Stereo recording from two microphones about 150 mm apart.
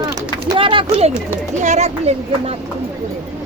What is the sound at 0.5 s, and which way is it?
Speech, 35° right (ahead or behind).